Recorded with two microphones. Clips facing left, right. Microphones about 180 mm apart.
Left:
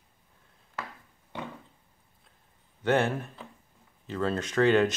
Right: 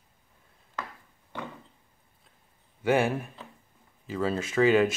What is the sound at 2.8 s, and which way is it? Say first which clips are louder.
Speech: right 1 dB; 10° right (ahead or behind).